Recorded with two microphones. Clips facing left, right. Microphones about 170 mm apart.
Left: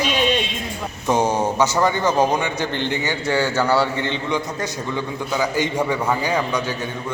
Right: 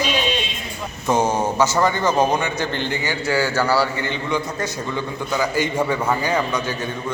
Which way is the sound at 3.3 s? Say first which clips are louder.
Even; 5° right (ahead or behind).